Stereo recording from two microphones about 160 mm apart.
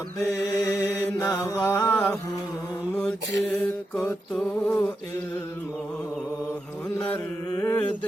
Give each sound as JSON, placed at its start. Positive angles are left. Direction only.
{"t": 0.2, "sound": "mantra", "side_deg": 20}
{"t": 3.5, "sound": "mantra", "side_deg": 5}
{"t": 7.5, "sound": "mantra", "side_deg": 15}